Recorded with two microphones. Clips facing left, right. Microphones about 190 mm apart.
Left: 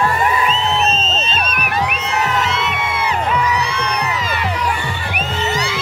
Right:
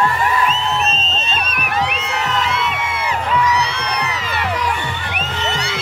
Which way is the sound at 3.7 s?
50° left (ahead or behind).